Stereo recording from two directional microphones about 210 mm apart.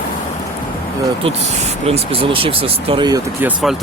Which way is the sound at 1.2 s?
30° right (ahead or behind).